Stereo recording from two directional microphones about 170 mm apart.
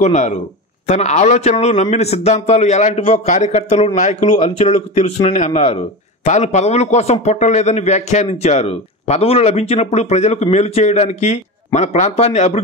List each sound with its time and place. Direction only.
0.0 s a man's voice: 45° left (ahead or behind)